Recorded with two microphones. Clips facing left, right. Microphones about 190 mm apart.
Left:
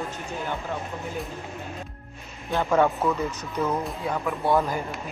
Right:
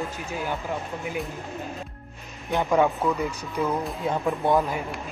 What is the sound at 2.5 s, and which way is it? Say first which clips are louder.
Speech: even; 15° right (ahead or behind).